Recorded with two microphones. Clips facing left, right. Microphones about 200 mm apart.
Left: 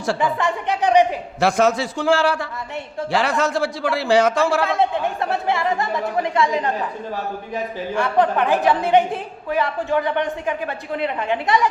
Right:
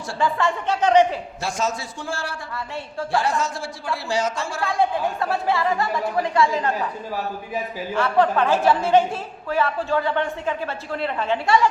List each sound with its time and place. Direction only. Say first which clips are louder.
0.2 s a woman's voice: left 1 dB; 15° left (ahead or behind)
1.4 s a man's voice: left 11 dB; 60° left (ahead or behind)
4.6 s speech: left 2 dB; 20° left (ahead or behind)
7.9 s a woman's voice: left 1 dB; 15° left (ahead or behind)